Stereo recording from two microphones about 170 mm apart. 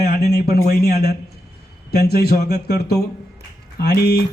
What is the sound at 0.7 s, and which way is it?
Speech, 65° left (ahead or behind).